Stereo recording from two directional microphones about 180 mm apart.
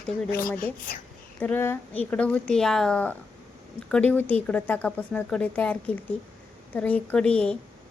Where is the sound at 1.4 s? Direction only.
10° left (ahead or behind).